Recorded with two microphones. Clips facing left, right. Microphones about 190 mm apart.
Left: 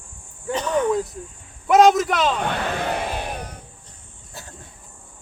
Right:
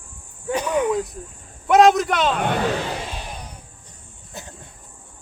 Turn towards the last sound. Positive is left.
turn(degrees=-20)  # may be behind; listen again after turning